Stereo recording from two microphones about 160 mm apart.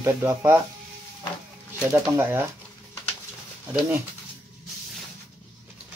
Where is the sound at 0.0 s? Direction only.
20° right (ahead or behind).